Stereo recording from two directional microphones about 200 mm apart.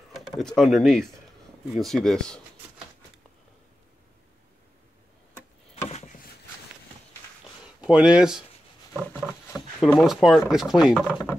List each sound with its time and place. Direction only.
0.1 s speech: centre (ahead or behind)
5.9 s a sound: 35° left (ahead or behind)
7.8 s speech: 5° right (ahead or behind)
9.5 s speech: 10° left (ahead or behind)